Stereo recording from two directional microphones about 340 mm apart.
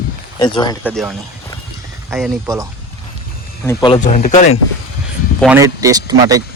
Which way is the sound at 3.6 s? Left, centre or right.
Centre.